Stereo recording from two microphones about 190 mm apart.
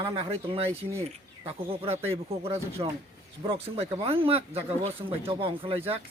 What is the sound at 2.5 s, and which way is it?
Speech, 15° right (ahead or behind).